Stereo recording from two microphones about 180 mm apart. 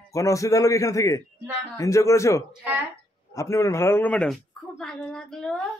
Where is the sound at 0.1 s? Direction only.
15° left (ahead or behind).